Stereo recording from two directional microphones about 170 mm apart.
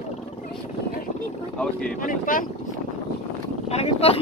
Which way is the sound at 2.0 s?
50° left (ahead or behind).